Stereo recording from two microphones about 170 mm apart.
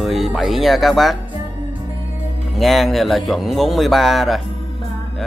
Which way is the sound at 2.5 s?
Centre (ahead or behind).